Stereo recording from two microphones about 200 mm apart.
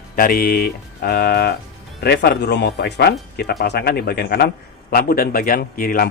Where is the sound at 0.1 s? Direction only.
45° left (ahead or behind).